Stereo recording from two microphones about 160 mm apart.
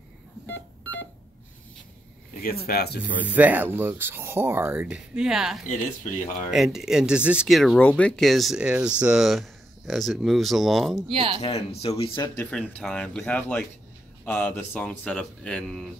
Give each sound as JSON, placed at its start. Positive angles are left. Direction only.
{"t": 0.5, "sound": "a sound", "side_deg": 10}
{"t": 2.4, "sound": "speech", "side_deg": 75}
{"t": 3.2, "sound": "speech", "side_deg": -10}
{"t": 5.7, "sound": "speech", "side_deg": 50}
{"t": 6.5, "sound": "speech", "side_deg": 0}
{"t": 11.1, "sound": "speech", "side_deg": -35}
{"t": 11.4, "sound": "speech", "side_deg": 40}
{"t": 12.2, "sound": "speech", "side_deg": 10}